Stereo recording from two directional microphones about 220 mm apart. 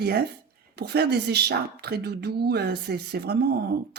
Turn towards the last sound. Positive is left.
turn(degrees=-45)  # may be behind; listen again after turning